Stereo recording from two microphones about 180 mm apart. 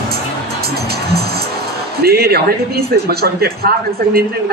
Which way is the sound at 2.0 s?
60° right (ahead or behind).